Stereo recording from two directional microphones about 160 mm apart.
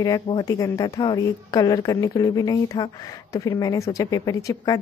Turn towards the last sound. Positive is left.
turn(degrees=25)  # may be behind; listen again after turning